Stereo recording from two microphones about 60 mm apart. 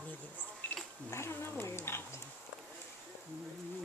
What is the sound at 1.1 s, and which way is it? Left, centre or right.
Speech, left.